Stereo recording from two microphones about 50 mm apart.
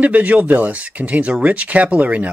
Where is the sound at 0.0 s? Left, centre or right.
Right.